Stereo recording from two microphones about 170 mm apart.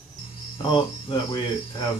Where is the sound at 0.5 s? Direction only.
25° left (ahead or behind).